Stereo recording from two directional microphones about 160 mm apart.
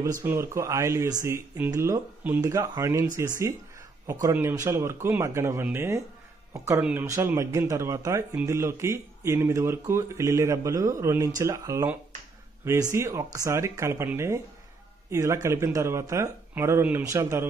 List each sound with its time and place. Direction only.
0.0 s speech: 15° right (ahead or behind)
4.1 s speech: 15° right (ahead or behind)
7.1 s speech: 20° right (ahead or behind)